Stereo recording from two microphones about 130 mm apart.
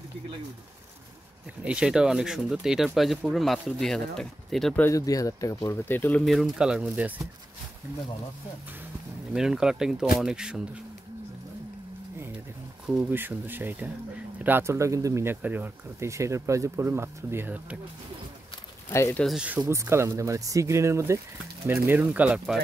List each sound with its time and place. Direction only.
1.6 s speech: 5° right (ahead or behind)
4.8 s speech: 25° left (ahead or behind)
6.2 s speech: centre (ahead or behind)
9.3 s speech: 5° right (ahead or behind)
12.8 s speech: 10° right (ahead or behind)
18.9 s speech: 20° left (ahead or behind)
19.3 s speech: 10° right (ahead or behind)
19.6 s speech: 20° right (ahead or behind)